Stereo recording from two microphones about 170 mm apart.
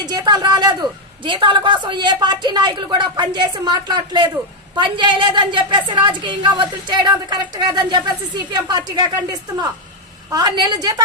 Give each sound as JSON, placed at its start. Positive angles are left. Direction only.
{"t": 0.0, "sound": "a woman's voice", "side_deg": -25}